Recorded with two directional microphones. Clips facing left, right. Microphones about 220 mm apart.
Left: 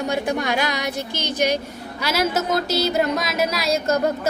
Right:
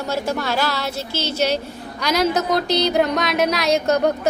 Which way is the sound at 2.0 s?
5° left (ahead or behind).